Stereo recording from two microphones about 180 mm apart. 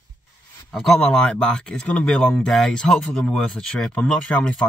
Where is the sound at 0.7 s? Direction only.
Centre (ahead or behind).